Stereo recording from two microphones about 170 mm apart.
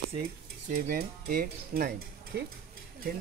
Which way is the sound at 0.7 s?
55° right (ahead or behind).